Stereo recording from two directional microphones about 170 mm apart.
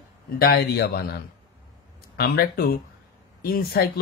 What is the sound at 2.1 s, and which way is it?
Speech, 65° left (ahead or behind).